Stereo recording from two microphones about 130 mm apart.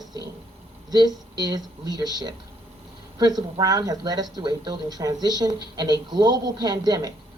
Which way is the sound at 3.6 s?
30° right (ahead or behind).